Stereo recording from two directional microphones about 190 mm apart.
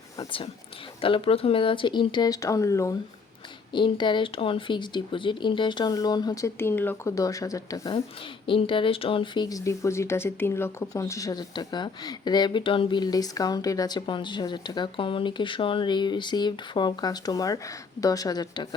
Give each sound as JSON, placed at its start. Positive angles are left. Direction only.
{"t": 0.2, "sound": "speech", "side_deg": 30}